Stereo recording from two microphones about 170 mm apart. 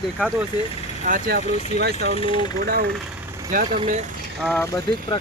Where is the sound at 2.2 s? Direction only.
30° left (ahead or behind).